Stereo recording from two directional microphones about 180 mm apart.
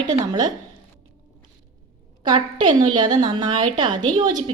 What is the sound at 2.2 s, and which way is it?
A woman's voice, 25° right (ahead or behind).